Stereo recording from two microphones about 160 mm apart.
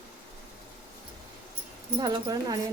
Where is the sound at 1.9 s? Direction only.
25° right (ahead or behind).